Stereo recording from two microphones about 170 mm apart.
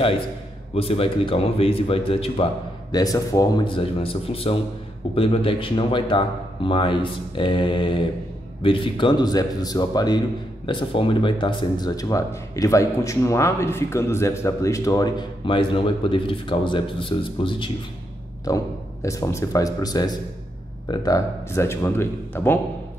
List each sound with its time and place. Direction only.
0.7 s speech: 35° left (ahead or behind)
2.9 s speech: 20° left (ahead or behind)
18.5 s a man's voice: 20° left (ahead or behind)